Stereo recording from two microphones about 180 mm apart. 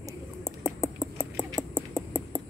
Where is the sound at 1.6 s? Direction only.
15° right (ahead or behind).